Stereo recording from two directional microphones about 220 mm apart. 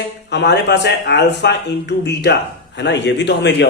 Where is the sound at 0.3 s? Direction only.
50° left (ahead or behind).